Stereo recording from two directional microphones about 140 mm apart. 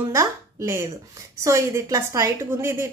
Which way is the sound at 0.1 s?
20° right (ahead or behind).